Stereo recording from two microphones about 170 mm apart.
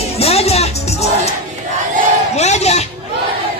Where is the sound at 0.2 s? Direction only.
35° left (ahead or behind).